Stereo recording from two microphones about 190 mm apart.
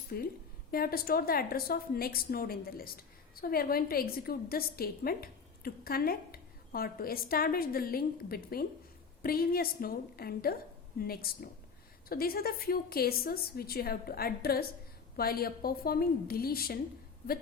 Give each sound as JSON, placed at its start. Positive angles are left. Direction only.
{"t": 0.1, "sound": "a woman's voice", "side_deg": 50}